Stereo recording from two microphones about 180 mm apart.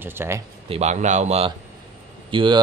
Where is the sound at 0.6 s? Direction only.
35° right (ahead or behind).